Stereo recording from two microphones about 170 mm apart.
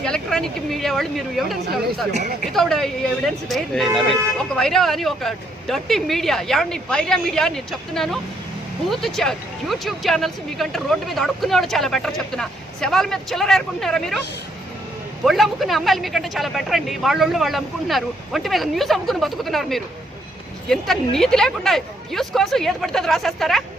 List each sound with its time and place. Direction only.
0.0 s speech: 5° left (ahead or behind)
2.1 s speech: 45° right (ahead or behind)
2.5 s speech: centre (ahead or behind)
15.2 s speech: centre (ahead or behind)